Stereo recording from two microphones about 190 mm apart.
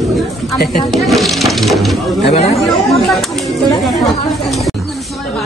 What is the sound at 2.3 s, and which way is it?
Speech, 35° left (ahead or behind).